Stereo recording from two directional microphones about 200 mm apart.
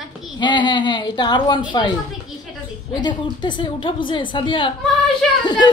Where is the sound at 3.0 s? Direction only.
20° left (ahead or behind).